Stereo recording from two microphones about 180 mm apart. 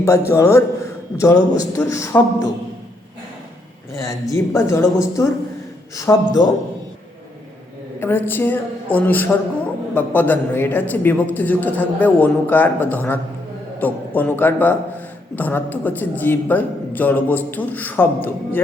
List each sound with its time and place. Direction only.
0.0 s a man's voice: 15° left (ahead or behind)
3.9 s a man's voice: 15° left (ahead or behind)
7.9 s a man's voice: 10° left (ahead or behind)